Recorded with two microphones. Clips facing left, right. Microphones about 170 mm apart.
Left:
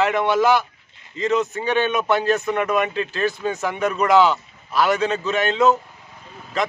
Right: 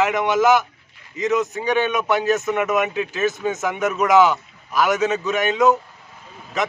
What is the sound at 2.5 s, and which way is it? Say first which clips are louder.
Speech: right 1 dB; 5° right (ahead or behind).